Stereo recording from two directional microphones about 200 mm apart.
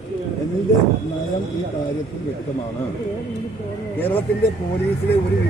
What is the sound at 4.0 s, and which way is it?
Speech, 10° left (ahead or behind).